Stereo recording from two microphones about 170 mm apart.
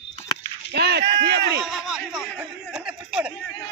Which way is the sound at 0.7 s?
75° right (ahead or behind).